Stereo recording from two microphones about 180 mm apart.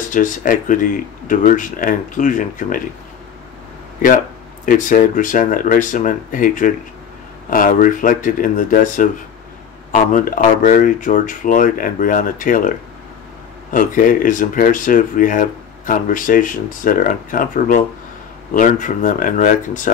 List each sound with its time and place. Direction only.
0.1 s speech: 45° left (ahead or behind)
4.6 s speech: 45° left (ahead or behind)